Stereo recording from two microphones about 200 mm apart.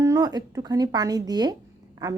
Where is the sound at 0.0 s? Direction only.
15° right (ahead or behind).